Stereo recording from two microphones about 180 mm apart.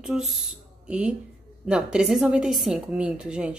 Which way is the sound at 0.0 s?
Centre (ahead or behind).